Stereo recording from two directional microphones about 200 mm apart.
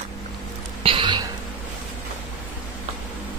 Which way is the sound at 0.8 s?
25° right (ahead or behind).